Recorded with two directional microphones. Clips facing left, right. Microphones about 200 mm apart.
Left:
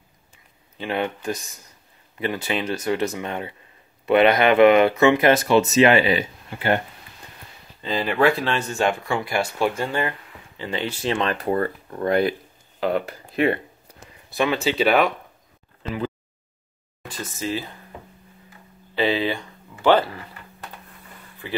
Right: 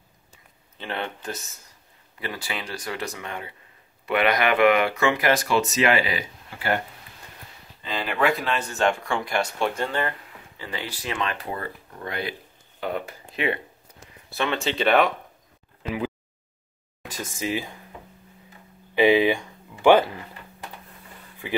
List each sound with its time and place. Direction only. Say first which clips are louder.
0.7 s speech: left 6 dB; 15° left (ahead or behind)
7.8 s speech: left 5 dB; 30° left (ahead or behind)
8.7 s speech: right 1 dB; 5° left (ahead or behind)
10.6 s speech: left 7 dB; 25° left (ahead or behind)
11.3 s speech: left 10 dB; 50° left (ahead or behind)
12.8 s speech: left 6 dB; 90° left
14.3 s speech: left 4 dB; 5° left (ahead or behind)
17.1 s speech: left 1 dB; 10° right (ahead or behind)
18.9 s speech: right 4 dB; 15° right (ahead or behind)
21.4 s speech: right 1 dB; 15° right (ahead or behind)